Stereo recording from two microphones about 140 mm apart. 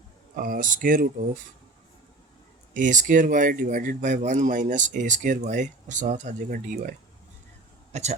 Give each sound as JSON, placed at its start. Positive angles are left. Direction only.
{"t": 0.3, "sound": "speech", "side_deg": -80}
{"t": 2.7, "sound": "speech", "side_deg": -65}
{"t": 7.9, "sound": "speech", "side_deg": -55}